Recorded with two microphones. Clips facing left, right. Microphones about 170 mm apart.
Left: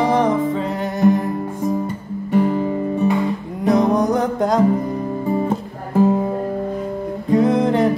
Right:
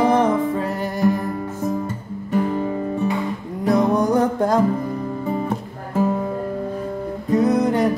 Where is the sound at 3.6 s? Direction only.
20° left (ahead or behind).